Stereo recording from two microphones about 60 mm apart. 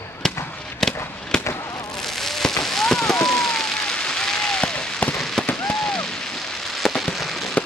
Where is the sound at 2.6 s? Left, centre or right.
Centre.